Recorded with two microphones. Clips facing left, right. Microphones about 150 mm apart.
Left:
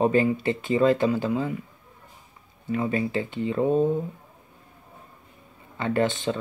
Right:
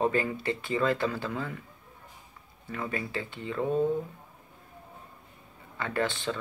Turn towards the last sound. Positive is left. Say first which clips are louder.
# left 6 dB
turn(degrees=20)  # may be behind; listen again after turning